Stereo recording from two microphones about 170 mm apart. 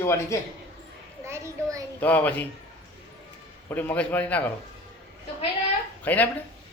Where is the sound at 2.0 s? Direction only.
10° left (ahead or behind).